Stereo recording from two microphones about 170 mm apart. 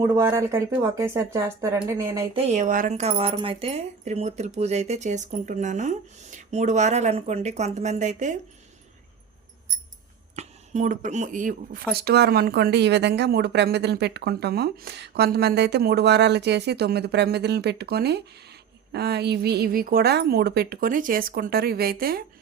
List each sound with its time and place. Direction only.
0.0 s speech: 15° right (ahead or behind)
2.3 s speech: 40° right (ahead or behind)
10.3 s a woman's voice: 45° right (ahead or behind); by 22.2 s 60° right (ahead or behind)